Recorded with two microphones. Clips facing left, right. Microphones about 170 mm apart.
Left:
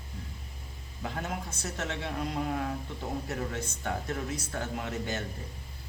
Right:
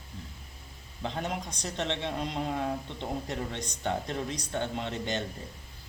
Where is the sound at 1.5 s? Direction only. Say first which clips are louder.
Right 3 dB; 20° right (ahead or behind).